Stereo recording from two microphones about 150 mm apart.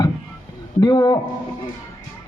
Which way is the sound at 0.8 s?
25° left (ahead or behind).